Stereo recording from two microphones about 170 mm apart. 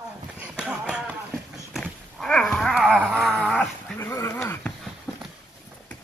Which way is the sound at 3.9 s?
15° left (ahead or behind).